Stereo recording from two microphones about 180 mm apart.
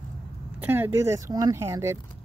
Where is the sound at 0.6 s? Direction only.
10° right (ahead or behind).